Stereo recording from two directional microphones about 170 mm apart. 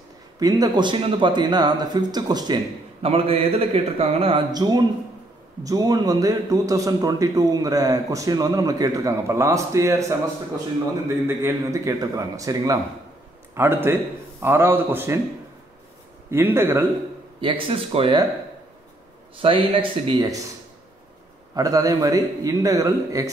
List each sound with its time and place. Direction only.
0.4 s a man's voice: 20° right (ahead or behind)
4.5 s a man's voice: 25° right (ahead or behind)
16.3 s a man's voice: 15° right (ahead or behind)
17.4 s speech: 30° right (ahead or behind)
19.3 s speech: 35° right (ahead or behind)
21.5 s a man's voice: 20° right (ahead or behind)